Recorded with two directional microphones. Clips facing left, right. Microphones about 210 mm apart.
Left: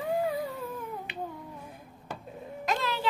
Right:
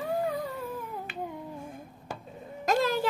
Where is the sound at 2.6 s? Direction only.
45° right (ahead or behind).